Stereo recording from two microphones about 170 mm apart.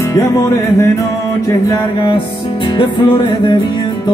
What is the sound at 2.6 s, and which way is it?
Music, 30° left (ahead or behind).